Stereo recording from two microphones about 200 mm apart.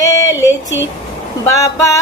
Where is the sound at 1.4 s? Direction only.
15° left (ahead or behind).